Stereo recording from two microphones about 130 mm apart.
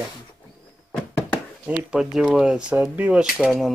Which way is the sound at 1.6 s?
10° right (ahead or behind).